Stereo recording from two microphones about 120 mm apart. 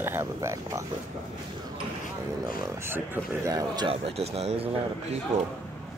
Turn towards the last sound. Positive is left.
turn(degrees=-60)  # may be behind; listen again after turning